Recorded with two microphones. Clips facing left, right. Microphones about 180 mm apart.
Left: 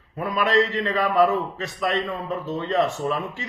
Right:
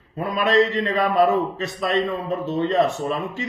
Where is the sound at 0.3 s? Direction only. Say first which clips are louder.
Right 3 dB; 20° right (ahead or behind).